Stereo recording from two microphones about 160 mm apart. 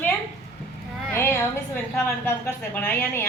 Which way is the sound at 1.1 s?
15° left (ahead or behind).